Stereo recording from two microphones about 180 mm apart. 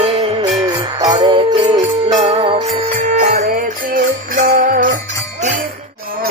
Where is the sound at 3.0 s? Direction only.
45° right (ahead or behind).